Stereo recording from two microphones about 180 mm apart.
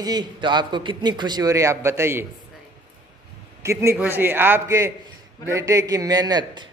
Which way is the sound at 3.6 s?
15° right (ahead or behind).